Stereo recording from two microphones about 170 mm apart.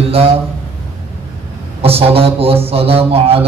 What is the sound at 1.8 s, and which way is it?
Speech, 35° right (ahead or behind).